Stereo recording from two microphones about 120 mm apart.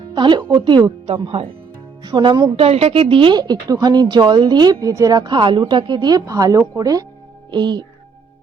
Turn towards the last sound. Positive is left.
turn(degrees=-40)  # may be behind; listen again after turning